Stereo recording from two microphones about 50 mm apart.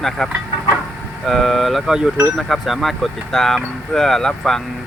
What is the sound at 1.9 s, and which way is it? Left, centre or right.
Speech, centre.